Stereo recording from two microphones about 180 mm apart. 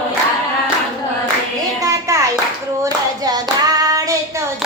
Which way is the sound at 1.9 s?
15° right (ahead or behind).